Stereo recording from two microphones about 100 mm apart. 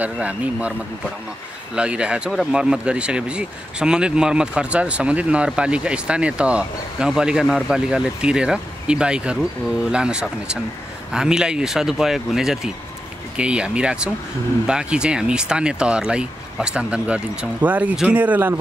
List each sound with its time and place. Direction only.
0.0 s speech: 15° right (ahead or behind)
1.8 s speech: 10° right (ahead or behind)